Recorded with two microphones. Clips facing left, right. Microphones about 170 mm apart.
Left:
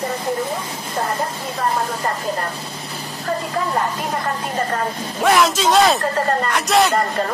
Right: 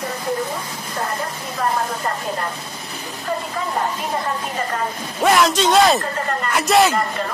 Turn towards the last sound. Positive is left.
turn(degrees=0)  # may be behind; listen again after turning